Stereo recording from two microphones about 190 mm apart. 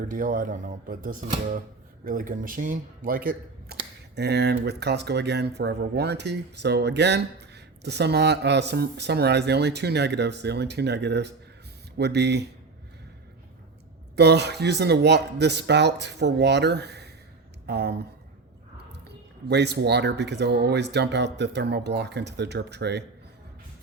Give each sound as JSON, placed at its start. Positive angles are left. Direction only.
{"t": 0.1, "sound": "speech", "side_deg": -45}
{"t": 14.2, "sound": "speech", "side_deg": -60}
{"t": 19.5, "sound": "speech", "side_deg": -60}